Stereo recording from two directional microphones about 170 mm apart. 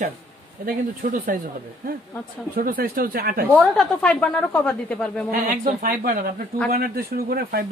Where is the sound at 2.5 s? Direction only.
60° right (ahead or behind).